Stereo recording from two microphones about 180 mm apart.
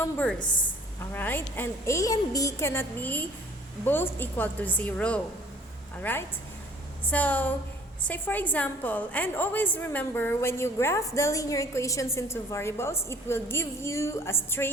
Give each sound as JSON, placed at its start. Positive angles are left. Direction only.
{"t": 0.0, "sound": "a woman's voice", "side_deg": 10}
{"t": 0.3, "sound": "a woman's voice", "side_deg": 25}
{"t": 1.1, "sound": "a woman's voice", "side_deg": 10}